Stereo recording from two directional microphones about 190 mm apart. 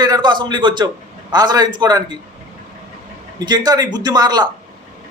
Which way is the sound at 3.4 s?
20° right (ahead or behind).